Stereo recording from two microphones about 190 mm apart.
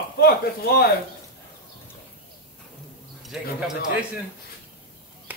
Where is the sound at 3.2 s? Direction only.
Centre (ahead or behind).